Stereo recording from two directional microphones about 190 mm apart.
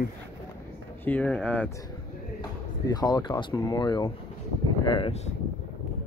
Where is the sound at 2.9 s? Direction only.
20° left (ahead or behind).